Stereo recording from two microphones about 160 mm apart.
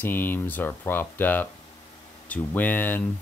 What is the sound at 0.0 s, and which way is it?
Speech, 15° left (ahead or behind).